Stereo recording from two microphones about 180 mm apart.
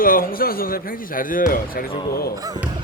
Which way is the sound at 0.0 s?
50° left (ahead or behind).